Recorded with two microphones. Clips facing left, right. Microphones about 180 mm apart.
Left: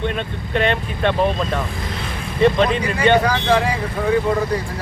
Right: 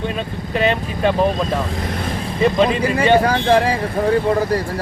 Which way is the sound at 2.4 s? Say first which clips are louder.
Even; 5° right (ahead or behind).